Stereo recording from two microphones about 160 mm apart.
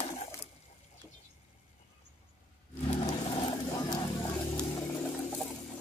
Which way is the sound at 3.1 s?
35° left (ahead or behind).